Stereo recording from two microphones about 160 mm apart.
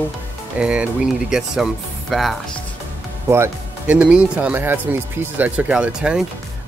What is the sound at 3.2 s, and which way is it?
Speech, 15° right (ahead or behind).